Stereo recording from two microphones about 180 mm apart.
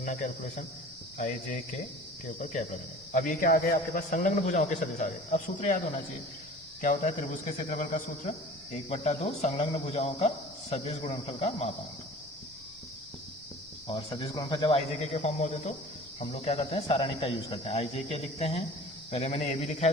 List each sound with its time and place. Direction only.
0.0 s a man's voice: 45° left (ahead or behind)
2.2 s a man's voice: 40° left (ahead or behind)
6.8 s speech: 45° left (ahead or behind)
13.8 s speech: 25° left (ahead or behind)